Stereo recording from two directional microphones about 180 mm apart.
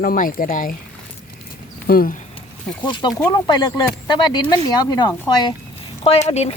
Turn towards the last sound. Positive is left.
turn(degrees=35)  # may be behind; listen again after turning